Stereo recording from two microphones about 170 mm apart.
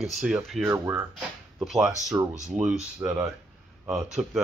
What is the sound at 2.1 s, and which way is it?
Speech, 15° right (ahead or behind).